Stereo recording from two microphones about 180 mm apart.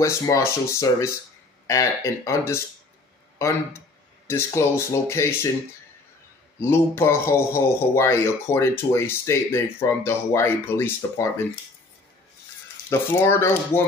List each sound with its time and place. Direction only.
0.0 s speech: 15° left (ahead or behind)
6.6 s speech: 15° left (ahead or behind)
12.9 s speech: 15° left (ahead or behind)